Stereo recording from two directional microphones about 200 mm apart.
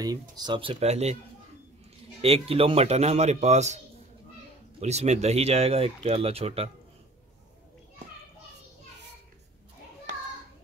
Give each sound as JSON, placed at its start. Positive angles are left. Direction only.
{"t": 0.0, "sound": "speech", "side_deg": -20}
{"t": 2.2, "sound": "speech", "side_deg": -30}